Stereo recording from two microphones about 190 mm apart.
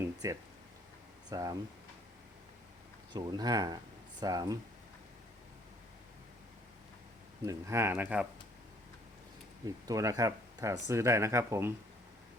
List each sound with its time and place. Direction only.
0.0 s a sound: 15° right (ahead or behind)
1.3 s speech: 20° right (ahead or behind)
3.1 s speech: 20° right (ahead or behind)
7.4 s speech: 15° right (ahead or behind)
9.6 s speech: 20° right (ahead or behind)